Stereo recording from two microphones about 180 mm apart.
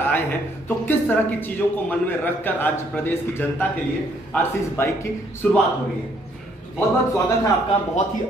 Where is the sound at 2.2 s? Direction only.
10° left (ahead or behind).